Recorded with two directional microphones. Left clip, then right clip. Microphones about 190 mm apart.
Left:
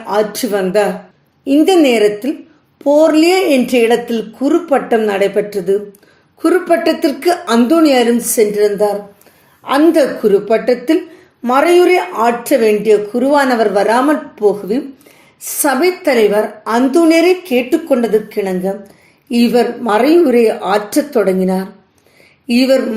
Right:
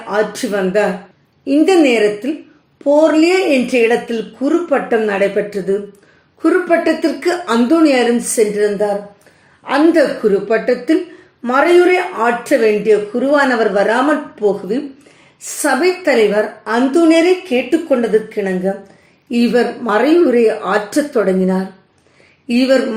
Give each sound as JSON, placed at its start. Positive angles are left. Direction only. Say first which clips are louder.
{"t": 0.1, "sound": "speech", "louder": "left 2 dB", "side_deg": 35}